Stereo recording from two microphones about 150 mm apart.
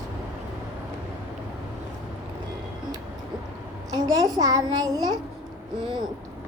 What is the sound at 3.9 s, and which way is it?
A child's voice, 25° right (ahead or behind).